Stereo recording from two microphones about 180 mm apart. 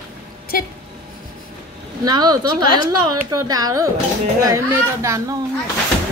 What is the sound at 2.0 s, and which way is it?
A woman's voice, 20° right (ahead or behind).